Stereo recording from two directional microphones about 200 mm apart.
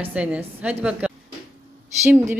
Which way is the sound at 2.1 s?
10° right (ahead or behind).